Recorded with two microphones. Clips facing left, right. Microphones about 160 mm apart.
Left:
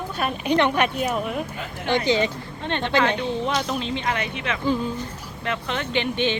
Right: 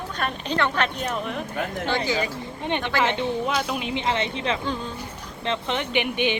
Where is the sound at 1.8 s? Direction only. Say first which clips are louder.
Left 6 dB; 20° left (ahead or behind).